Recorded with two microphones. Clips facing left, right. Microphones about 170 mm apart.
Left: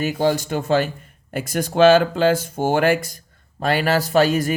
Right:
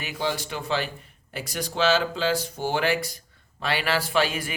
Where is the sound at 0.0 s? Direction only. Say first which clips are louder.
Left 9 dB; 45° left (ahead or behind).